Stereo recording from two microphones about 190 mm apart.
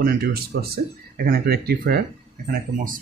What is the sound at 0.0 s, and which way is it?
Speech, 55° right (ahead or behind).